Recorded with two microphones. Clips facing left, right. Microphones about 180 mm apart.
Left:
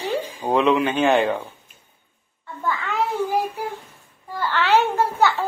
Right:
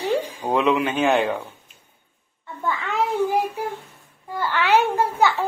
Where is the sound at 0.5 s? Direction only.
5° right (ahead or behind).